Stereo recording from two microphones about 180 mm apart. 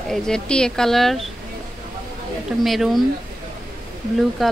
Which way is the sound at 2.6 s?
Centre (ahead or behind).